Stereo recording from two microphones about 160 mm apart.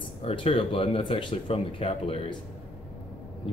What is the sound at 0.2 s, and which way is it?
Speech, 35° left (ahead or behind).